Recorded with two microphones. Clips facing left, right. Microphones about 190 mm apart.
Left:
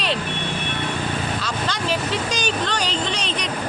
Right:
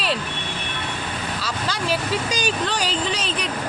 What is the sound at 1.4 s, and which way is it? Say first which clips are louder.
Vehicle: left 1 dB; 5° right (ahead or behind).